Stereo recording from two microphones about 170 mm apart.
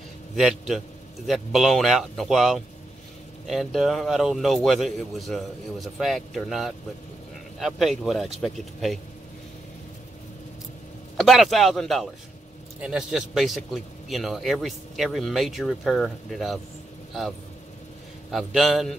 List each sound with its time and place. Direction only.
0.4 s a man's voice: centre (ahead or behind)
11.1 s a man's voice: centre (ahead or behind)
18.3 s a man's voice: centre (ahead or behind)